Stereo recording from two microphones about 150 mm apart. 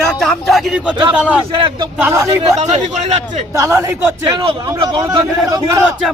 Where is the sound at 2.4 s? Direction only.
50° right (ahead or behind).